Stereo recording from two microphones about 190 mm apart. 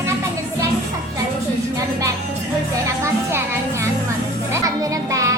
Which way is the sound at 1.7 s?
15° right (ahead or behind).